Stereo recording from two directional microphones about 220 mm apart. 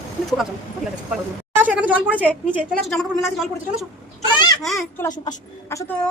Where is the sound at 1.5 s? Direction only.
5° right (ahead or behind).